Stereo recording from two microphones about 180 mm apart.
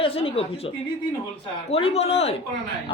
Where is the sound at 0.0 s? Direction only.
30° left (ahead or behind).